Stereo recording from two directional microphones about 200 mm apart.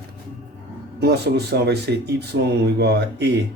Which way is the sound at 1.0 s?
55° right (ahead or behind).